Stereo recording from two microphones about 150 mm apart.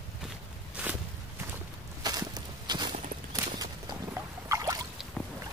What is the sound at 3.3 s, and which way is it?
Clip-clop, 25° right (ahead or behind).